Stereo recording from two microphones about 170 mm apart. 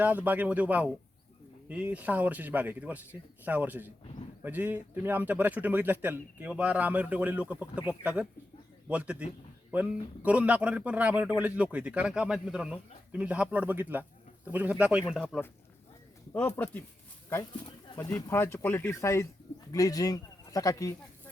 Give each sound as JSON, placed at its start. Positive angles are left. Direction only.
{"t": 0.0, "sound": "speech", "side_deg": -10}
{"t": 16.3, "sound": "speech", "side_deg": 10}